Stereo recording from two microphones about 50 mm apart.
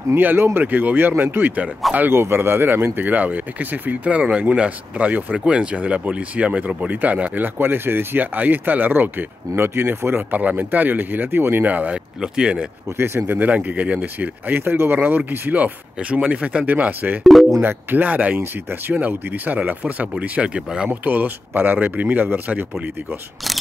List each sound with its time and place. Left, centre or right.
0.1 s speech: right
9.6 s speech: right
11.6 s speech: right
12.2 s speech: centre
12.9 s speech: right
13.6 s speech: right
16.2 s speech: centre
16.4 s speech: right
17.2 s speech: centre
17.6 s speech: right
18.4 s speech: right
18.9 s speech: right
20.9 s speech: right